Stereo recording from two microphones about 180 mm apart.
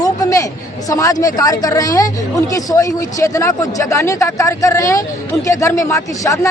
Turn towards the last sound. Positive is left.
turn(degrees=15)  # may be behind; listen again after turning